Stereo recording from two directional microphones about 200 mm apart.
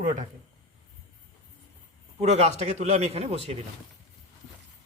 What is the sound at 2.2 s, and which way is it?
Speech, 35° right (ahead or behind).